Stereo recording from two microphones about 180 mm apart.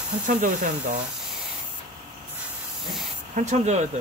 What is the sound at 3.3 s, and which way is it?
Speech, 40° right (ahead or behind).